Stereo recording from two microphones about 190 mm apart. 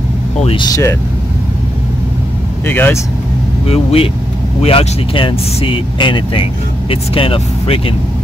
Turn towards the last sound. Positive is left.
turn(degrees=30)  # may be behind; listen again after turning